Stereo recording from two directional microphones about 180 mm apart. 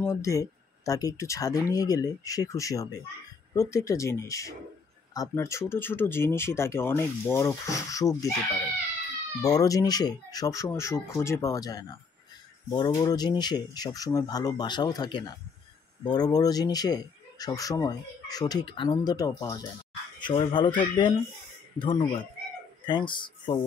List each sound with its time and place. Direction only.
0.0 s speech: 15° left (ahead or behind)
9.4 s speech: 20° left (ahead or behind)
21.7 s speech: 25° left (ahead or behind)